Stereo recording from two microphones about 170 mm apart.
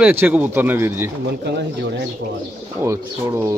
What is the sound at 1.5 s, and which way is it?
Speech, 75° right (ahead or behind).